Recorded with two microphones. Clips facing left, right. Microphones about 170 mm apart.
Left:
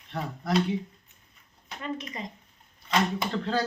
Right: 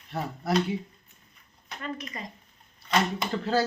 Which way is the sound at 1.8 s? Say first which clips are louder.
Left 2 dB; 20° left (ahead or behind).